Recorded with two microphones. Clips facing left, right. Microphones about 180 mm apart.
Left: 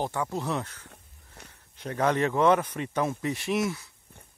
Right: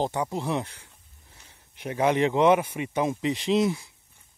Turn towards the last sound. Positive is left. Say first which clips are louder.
# right 5 dB
turn(degrees=-15)  # may be behind; listen again after turning